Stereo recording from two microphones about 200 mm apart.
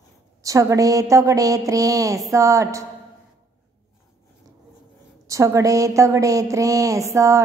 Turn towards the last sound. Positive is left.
turn(degrees=-15)  # may be behind; listen again after turning